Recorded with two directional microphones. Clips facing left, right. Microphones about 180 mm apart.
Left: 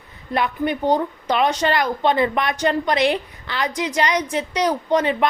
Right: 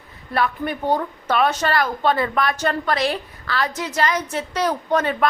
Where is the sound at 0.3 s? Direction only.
20° left (ahead or behind).